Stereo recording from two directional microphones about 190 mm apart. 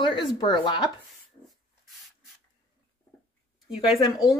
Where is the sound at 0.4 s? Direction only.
25° left (ahead or behind).